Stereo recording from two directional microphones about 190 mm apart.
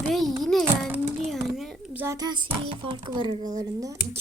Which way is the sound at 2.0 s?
15° right (ahead or behind).